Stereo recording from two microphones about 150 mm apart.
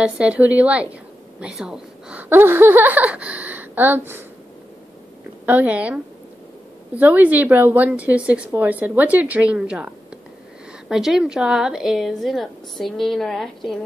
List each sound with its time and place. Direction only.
0.0 s a woman's voice: 10° right (ahead or behind)
5.4 s a woman's voice: 10° right (ahead or behind)
7.0 s a woman's voice: 10° right (ahead or behind)
10.9 s a woman's voice: centre (ahead or behind)